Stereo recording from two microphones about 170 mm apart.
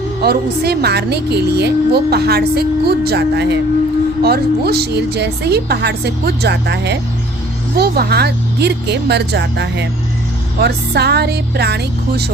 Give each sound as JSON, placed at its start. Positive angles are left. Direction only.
{"t": 0.2, "sound": "a woman's voice", "side_deg": -70}
{"t": 7.8, "sound": "a woman's voice", "side_deg": -70}
{"t": 10.6, "sound": "a woman's voice", "side_deg": -75}